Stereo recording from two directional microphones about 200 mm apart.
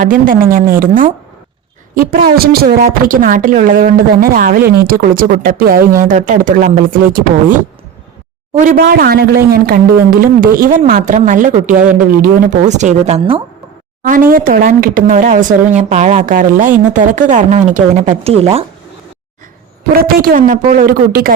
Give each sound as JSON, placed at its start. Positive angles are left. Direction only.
{"t": 0.0, "sound": "a woman's voice", "side_deg": -40}
{"t": 8.5, "sound": "a woman's voice", "side_deg": -45}
{"t": 14.0, "sound": "speech", "side_deg": -45}
{"t": 20.0, "sound": "a woman's voice", "side_deg": -45}